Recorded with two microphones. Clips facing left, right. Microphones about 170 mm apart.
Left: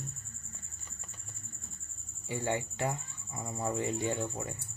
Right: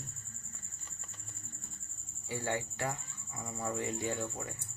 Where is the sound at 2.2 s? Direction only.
20° left (ahead or behind).